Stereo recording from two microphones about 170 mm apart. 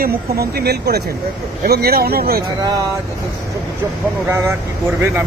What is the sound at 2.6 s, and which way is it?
Speech, 20° right (ahead or behind).